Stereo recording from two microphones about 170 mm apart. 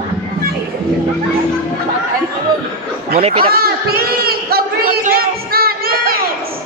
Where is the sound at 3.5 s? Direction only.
65° right (ahead or behind).